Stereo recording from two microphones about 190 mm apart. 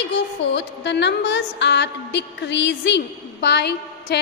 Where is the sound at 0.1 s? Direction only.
65° left (ahead or behind).